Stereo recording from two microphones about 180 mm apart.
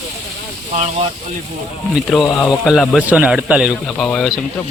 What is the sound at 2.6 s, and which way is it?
A man's voice, centre (ahead or behind).